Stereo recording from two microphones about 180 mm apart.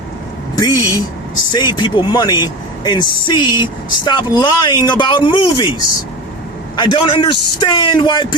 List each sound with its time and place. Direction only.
0.5 s a man's voice: 20° left (ahead or behind)
6.7 s a man's voice: 25° left (ahead or behind)